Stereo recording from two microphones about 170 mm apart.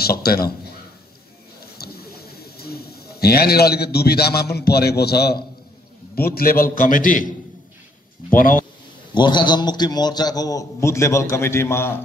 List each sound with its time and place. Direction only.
0.0 s a man's voice: 65° left (ahead or behind)
1.6 s a sound: 65° left (ahead or behind)
6.1 s a man's voice: 60° left (ahead or behind)
8.3 s a man's voice: 55° left (ahead or behind)
9.1 s a man's voice: 25° left (ahead or behind)